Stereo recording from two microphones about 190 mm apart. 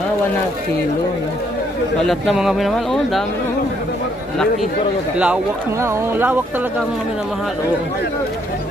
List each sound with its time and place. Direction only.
2.0 s speech: centre (ahead or behind)
5.2 s speech: 10° right (ahead or behind)